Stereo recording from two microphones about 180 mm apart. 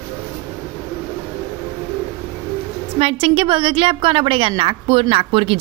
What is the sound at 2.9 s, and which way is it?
A woman's voice, 35° right (ahead or behind).